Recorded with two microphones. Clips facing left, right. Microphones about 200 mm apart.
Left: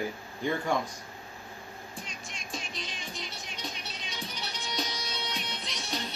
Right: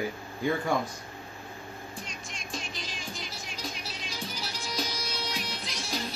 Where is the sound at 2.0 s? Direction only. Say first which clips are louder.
Right 2 dB; centre (ahead or behind).